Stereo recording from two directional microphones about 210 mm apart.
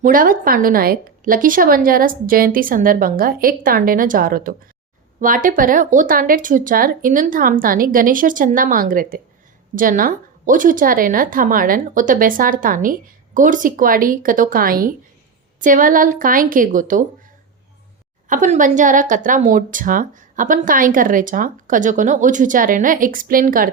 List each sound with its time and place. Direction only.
0.0 s a woman's voice: 40° right (ahead or behind)
18.3 s speech: 35° right (ahead or behind)